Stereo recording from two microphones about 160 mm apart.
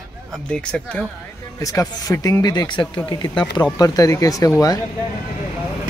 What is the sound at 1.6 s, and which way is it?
Speech, 20° left (ahead or behind).